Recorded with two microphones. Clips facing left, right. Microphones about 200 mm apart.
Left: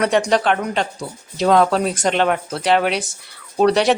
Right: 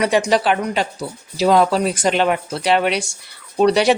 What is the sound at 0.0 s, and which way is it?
A woman's voice, 5° right (ahead or behind).